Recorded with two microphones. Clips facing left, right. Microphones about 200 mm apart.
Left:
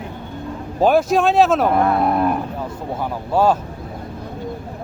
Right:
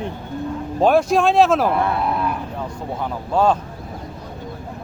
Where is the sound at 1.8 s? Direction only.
45° left (ahead or behind).